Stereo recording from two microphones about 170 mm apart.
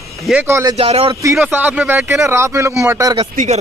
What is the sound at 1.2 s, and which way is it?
Speech, 10° right (ahead or behind).